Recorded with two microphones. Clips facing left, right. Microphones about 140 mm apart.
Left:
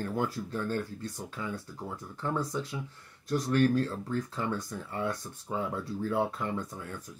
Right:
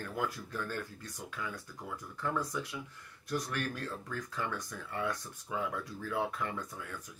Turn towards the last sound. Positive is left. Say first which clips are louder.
# left 4 dB
turn(degrees=25)  # may be behind; listen again after turning